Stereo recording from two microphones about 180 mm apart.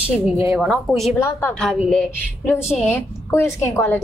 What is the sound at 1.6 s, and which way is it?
Speech, centre (ahead or behind).